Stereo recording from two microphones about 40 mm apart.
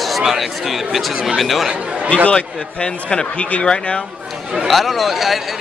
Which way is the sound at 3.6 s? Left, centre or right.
Left.